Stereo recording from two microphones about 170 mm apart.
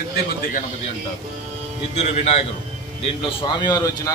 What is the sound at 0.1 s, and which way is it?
Speech, 55° left (ahead or behind).